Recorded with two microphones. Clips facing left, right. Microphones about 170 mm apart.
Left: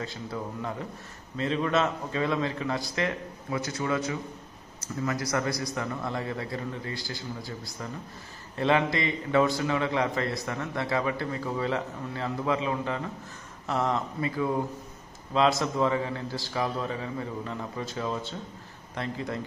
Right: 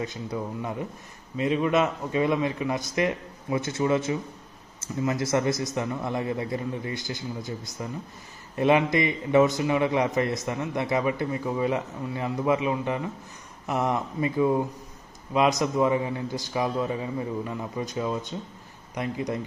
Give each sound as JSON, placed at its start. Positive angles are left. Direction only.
{"t": 0.0, "sound": "a man's voice", "side_deg": -20}